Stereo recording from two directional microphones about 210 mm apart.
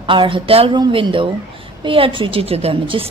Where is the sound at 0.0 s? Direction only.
25° right (ahead or behind).